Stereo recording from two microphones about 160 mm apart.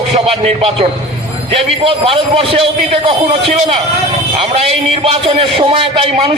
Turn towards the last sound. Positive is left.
turn(degrees=-35)  # may be behind; listen again after turning